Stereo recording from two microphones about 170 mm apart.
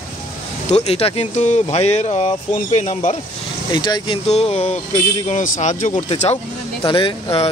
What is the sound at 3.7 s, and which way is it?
Speech, 25° left (ahead or behind).